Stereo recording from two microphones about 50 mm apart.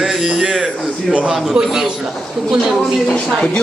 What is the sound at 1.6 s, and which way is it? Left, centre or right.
A man's voice, centre.